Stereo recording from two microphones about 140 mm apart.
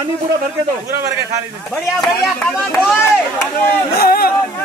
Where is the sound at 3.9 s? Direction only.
90° left.